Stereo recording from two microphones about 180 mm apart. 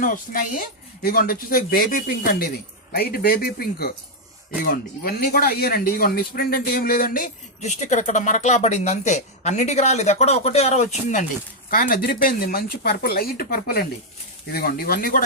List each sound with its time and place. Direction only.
0.0 s speech: 50° left (ahead or behind)
11.7 s speech: 50° left (ahead or behind)